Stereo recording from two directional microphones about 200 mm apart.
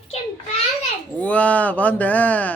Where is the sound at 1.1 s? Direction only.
5° left (ahead or behind).